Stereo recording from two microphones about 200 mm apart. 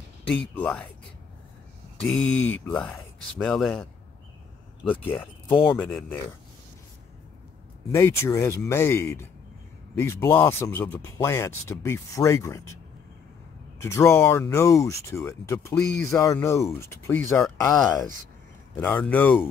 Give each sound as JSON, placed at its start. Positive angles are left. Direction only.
{"t": 0.6, "sound": "speech", "side_deg": 5}
{"t": 2.0, "sound": "speech", "side_deg": 5}
{"t": 5.5, "sound": "speech", "side_deg": 25}
{"t": 5.8, "sound": "speech", "side_deg": 10}
{"t": 7.9, "sound": "speech", "side_deg": 15}
{"t": 13.7, "sound": "speech", "side_deg": 15}
{"t": 18.8, "sound": "speech", "side_deg": 10}